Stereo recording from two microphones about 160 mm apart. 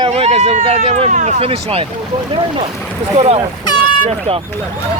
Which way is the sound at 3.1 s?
40° right (ahead or behind).